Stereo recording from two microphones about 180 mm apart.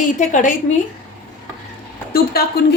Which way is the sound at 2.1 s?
60° left (ahead or behind).